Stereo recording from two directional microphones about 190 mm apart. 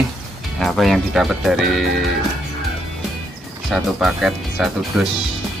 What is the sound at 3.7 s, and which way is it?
Speech, 5° right (ahead or behind).